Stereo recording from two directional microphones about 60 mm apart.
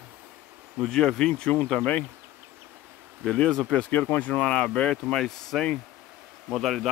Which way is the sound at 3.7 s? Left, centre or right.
Left.